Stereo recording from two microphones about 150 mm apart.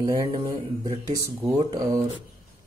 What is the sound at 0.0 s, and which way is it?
Speech, 25° right (ahead or behind).